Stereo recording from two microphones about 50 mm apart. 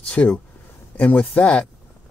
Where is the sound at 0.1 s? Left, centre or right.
Left.